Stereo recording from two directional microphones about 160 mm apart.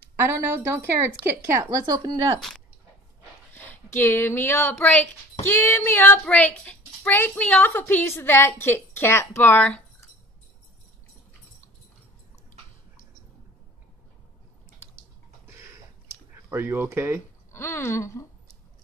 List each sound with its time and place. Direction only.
0.2 s a woman's voice: 15° right (ahead or behind)
3.5 s speech: 10° left (ahead or behind)
16.4 s speech: 15° right (ahead or behind)
17.5 s speech: 15° left (ahead or behind)